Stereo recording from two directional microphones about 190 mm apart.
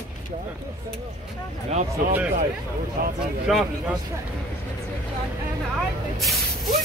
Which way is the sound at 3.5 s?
Centre (ahead or behind).